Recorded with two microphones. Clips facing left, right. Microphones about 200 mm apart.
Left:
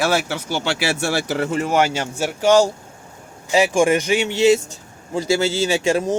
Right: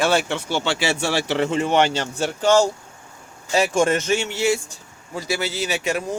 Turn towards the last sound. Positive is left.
turn(degrees=30)  # may be behind; listen again after turning